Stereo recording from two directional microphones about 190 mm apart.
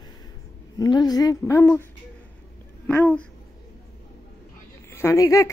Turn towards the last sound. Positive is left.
turn(degrees=15)  # may be behind; listen again after turning